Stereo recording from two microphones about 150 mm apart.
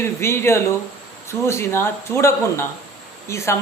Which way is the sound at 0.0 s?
15° left (ahead or behind).